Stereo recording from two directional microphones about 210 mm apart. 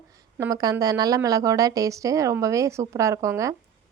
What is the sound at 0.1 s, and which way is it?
Speech, 15° right (ahead or behind).